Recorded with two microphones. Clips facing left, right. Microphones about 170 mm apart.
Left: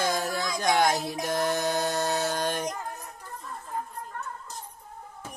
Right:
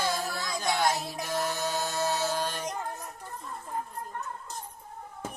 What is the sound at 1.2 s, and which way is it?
Music, 70° left (ahead or behind).